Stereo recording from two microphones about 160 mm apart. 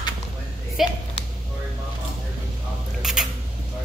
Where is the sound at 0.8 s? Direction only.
Centre (ahead or behind).